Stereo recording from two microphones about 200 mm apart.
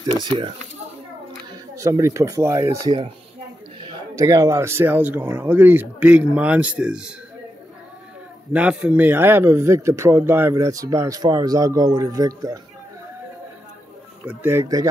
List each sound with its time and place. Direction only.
0.0 s speech: 25° right (ahead or behind)
1.5 s speech: 15° right (ahead or behind)
3.8 s speech: 20° right (ahead or behind)
8.5 s speech: 5° right (ahead or behind)
14.2 s speech: 10° right (ahead or behind)